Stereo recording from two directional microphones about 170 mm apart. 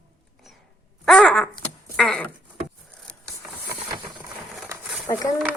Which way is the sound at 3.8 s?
25° right (ahead or behind).